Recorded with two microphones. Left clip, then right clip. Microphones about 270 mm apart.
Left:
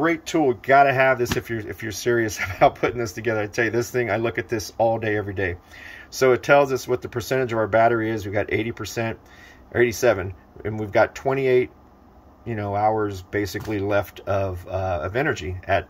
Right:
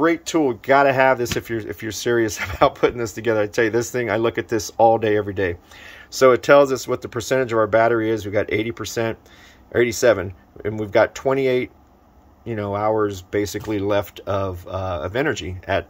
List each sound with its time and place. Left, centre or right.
0.0 s speech: centre